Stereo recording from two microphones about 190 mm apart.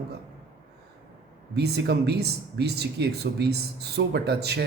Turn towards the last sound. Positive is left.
turn(degrees=-60)  # may be behind; listen again after turning